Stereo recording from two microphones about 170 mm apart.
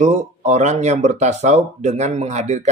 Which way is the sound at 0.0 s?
45° right (ahead or behind).